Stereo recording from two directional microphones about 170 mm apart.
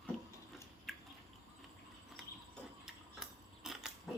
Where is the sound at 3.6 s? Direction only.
Centre (ahead or behind).